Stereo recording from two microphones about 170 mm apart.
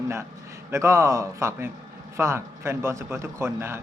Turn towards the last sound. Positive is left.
turn(degrees=-15)  # may be behind; listen again after turning